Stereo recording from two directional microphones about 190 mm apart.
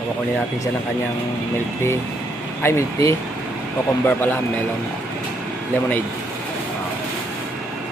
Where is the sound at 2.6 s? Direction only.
15° left (ahead or behind).